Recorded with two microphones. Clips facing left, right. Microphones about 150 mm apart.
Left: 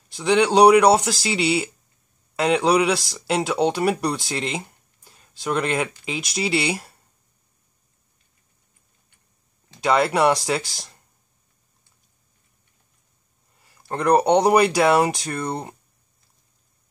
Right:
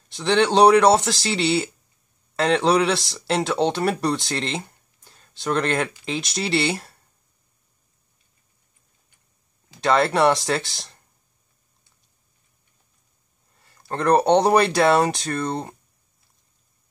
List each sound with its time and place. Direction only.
0.1 s speech: 5° left (ahead or behind)
4.2 s speech: 5° left (ahead or behind)
9.8 s speech: 5° left (ahead or behind)
13.6 s speech: 15° left (ahead or behind)